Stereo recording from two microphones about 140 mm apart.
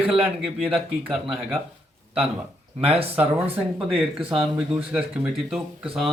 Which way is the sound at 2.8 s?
45° right (ahead or behind).